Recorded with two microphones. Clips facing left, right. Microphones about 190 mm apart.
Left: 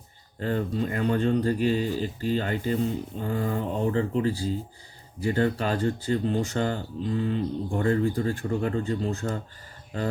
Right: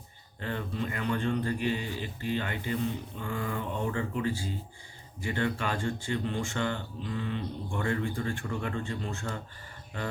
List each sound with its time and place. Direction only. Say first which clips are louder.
0.3 s speech: left 7 dB; 40° left (ahead or behind)